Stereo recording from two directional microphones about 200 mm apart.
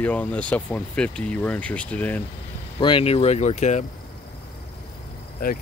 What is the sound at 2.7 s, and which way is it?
Speech, 25° left (ahead or behind).